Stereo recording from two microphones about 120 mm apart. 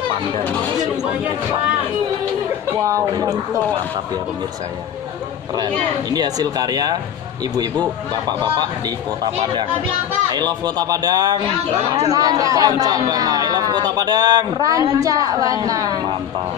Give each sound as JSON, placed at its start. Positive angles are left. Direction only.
{"t": 2.9, "sound": "speech", "side_deg": -30}
{"t": 5.6, "sound": "speech", "side_deg": -35}
{"t": 8.1, "sound": "speech", "side_deg": -35}